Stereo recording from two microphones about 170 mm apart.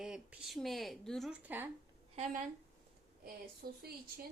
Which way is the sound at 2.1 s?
45° right (ahead or behind).